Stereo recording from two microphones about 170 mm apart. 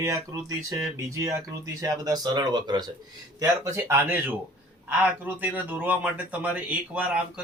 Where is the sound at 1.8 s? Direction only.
20° right (ahead or behind).